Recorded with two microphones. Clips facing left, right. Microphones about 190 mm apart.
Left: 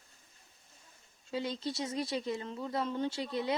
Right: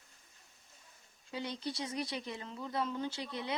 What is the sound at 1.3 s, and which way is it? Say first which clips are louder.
Speech: left 4 dB; 25° left (ahead or behind).